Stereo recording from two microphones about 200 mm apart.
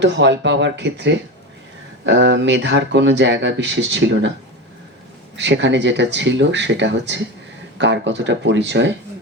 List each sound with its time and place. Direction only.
0.0 s speech: 65° right (ahead or behind)
5.4 s speech: 65° right (ahead or behind)